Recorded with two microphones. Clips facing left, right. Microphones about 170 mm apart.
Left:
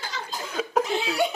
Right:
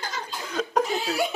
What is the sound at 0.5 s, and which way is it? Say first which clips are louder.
Cough: even; 5° left (ahead or behind).